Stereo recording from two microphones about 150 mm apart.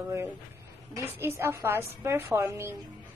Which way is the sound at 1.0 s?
15° right (ahead or behind).